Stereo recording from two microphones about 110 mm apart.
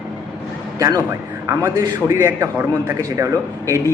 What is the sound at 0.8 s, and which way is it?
Speech, 35° right (ahead or behind).